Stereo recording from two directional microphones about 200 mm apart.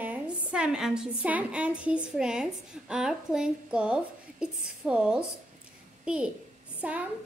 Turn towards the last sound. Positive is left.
turn(degrees=-5)  # may be behind; listen again after turning